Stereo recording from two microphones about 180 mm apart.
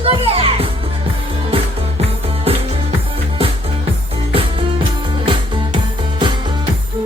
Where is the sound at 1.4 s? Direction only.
35° right (ahead or behind).